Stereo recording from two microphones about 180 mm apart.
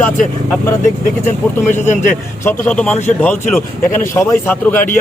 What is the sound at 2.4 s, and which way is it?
A man's voice, 5° left (ahead or behind).